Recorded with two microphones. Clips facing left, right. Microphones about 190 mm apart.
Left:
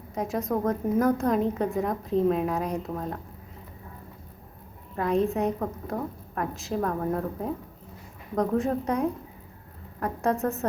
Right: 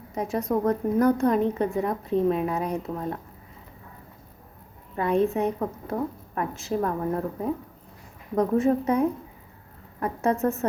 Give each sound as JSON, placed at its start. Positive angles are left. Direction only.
{"t": 0.1, "sound": "a woman's voice", "side_deg": 0}
{"t": 4.9, "sound": "a woman's voice", "side_deg": 0}